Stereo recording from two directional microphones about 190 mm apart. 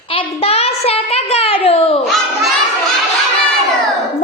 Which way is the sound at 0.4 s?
30° left (ahead or behind).